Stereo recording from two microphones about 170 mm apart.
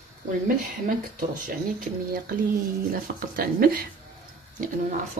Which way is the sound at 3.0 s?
55° right (ahead or behind).